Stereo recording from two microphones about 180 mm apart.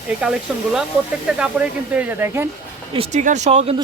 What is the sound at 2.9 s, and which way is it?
Speech, 35° right (ahead or behind).